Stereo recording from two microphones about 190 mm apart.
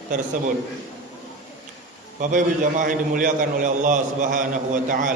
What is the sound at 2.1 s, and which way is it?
A man's voice, 45° right (ahead or behind).